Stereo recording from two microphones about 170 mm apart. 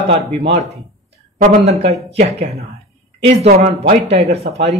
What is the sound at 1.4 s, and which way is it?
Speech, 45° right (ahead or behind).